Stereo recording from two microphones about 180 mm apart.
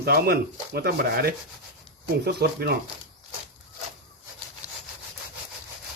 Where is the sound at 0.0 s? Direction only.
60° right (ahead or behind).